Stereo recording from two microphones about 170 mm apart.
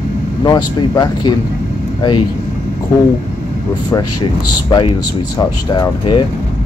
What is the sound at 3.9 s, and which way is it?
Speech, 25° left (ahead or behind).